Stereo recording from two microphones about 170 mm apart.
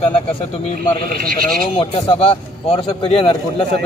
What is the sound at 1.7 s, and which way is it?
A man's voice, 30° left (ahead or behind).